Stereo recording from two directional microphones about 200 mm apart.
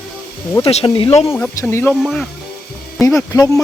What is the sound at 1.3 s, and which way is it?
Speech, 10° left (ahead or behind).